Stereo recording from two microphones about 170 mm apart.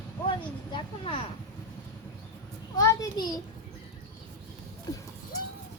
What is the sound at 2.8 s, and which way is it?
Speech, 20° left (ahead or behind).